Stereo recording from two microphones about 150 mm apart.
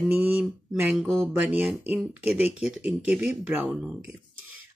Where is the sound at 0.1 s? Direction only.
5° right (ahead or behind).